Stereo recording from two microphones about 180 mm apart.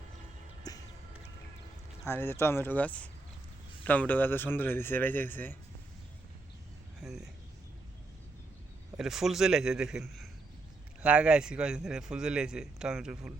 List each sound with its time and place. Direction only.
0.7 s music: 20° left (ahead or behind)
2.0 s speech: 15° left (ahead or behind)
7.0 s a man's voice: centre (ahead or behind)
9.0 s a man's voice: centre (ahead or behind)